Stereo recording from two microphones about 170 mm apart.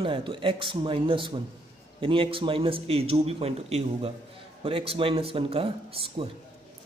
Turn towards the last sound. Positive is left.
turn(degrees=-35)  # may be behind; listen again after turning